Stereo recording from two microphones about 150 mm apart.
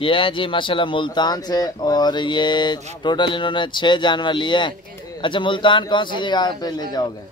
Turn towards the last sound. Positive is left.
turn(degrees=25)  # may be behind; listen again after turning